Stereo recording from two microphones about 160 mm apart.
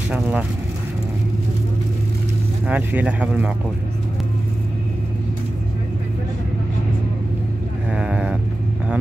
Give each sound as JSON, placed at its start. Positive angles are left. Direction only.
{"t": 0.1, "sound": "speech", "side_deg": -10}
{"t": 2.7, "sound": "speech", "side_deg": -10}
{"t": 7.9, "sound": "sheep", "side_deg": -5}